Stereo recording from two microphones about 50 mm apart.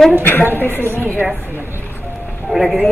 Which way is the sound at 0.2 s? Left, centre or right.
Left.